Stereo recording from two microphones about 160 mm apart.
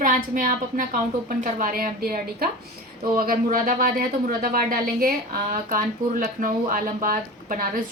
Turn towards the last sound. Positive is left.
turn(degrees=-60)  # may be behind; listen again after turning